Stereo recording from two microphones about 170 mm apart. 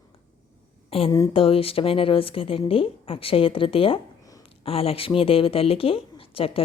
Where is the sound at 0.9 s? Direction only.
35° left (ahead or behind).